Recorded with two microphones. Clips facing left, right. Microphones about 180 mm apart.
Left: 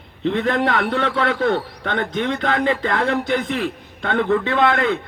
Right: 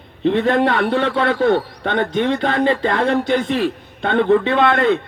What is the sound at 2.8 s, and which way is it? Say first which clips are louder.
A man's voice: right 3 dB; 20° right (ahead or behind).